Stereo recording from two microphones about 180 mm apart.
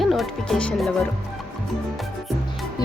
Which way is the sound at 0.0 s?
Centre (ahead or behind).